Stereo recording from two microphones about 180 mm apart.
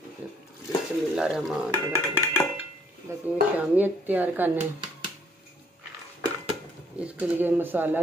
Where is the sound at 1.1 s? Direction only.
Centre (ahead or behind).